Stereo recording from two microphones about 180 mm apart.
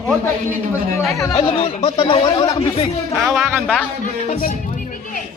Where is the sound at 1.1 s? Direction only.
20° left (ahead or behind).